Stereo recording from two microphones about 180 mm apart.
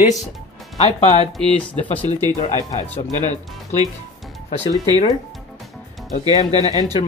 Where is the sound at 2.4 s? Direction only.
35° left (ahead or behind).